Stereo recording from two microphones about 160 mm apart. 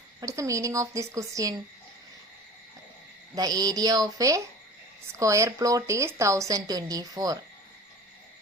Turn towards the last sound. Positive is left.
turn(degrees=-25)  # may be behind; listen again after turning